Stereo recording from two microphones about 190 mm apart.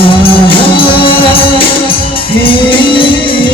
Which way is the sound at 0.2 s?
25° left (ahead or behind).